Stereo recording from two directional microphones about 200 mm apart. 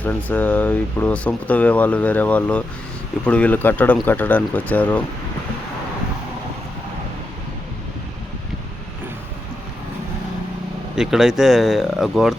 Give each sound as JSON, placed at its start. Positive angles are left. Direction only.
{"t": 0.0, "sound": "speech", "side_deg": 10}
{"t": 10.9, "sound": "speech", "side_deg": 0}